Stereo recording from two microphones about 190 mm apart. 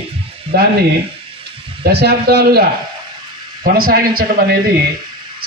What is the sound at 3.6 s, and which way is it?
Speech, 50° right (ahead or behind).